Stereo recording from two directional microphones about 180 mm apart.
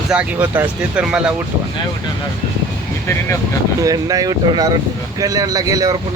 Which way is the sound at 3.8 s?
20° right (ahead or behind).